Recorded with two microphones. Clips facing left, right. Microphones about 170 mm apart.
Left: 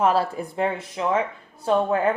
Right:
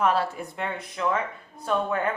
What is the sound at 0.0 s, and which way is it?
A woman's voice, 35° left (ahead or behind).